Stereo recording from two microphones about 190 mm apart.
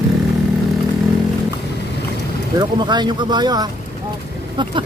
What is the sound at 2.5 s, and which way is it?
Speech, 20° right (ahead or behind).